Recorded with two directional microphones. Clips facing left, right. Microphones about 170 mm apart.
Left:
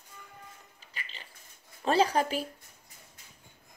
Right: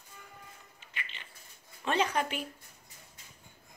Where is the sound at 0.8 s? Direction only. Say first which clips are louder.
Right 1 dB; 35° left (ahead or behind).